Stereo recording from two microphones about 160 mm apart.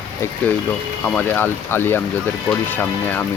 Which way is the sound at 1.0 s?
10° left (ahead or behind).